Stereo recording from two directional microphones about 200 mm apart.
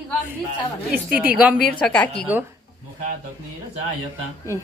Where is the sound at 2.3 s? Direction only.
10° right (ahead or behind).